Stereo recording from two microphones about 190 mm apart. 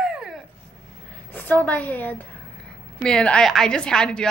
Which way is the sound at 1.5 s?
10° left (ahead or behind).